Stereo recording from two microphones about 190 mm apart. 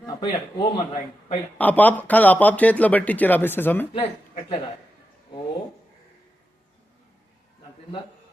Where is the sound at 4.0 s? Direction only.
35° left (ahead or behind).